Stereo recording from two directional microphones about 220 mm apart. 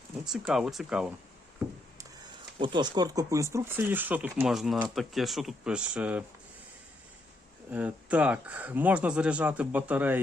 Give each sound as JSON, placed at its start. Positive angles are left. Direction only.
{"t": 0.3, "sound": "speech", "side_deg": 0}
{"t": 2.6, "sound": "speech", "side_deg": -20}
{"t": 7.7, "sound": "speech", "side_deg": -5}